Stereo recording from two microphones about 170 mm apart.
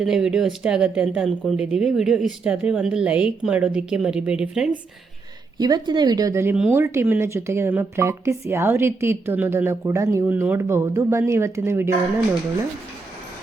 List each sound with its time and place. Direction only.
0.0 s speech: 5° right (ahead or behind)
5.5 s speech: 25° right (ahead or behind)